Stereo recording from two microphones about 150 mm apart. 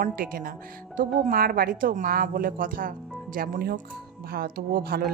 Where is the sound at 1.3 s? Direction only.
85° right.